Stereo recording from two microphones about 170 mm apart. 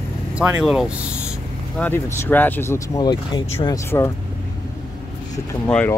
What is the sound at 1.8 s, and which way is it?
Speech, 10° left (ahead or behind).